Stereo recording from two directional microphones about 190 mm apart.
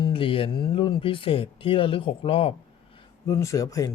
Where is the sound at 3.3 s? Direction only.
15° left (ahead or behind).